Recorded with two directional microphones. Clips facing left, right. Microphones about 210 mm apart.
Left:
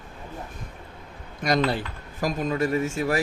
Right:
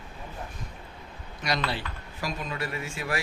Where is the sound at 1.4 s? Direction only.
50° left (ahead or behind).